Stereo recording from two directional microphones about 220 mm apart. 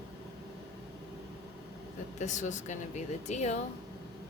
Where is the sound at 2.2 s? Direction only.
35° left (ahead or behind).